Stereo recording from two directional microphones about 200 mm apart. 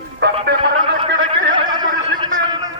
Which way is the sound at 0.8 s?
25° right (ahead or behind).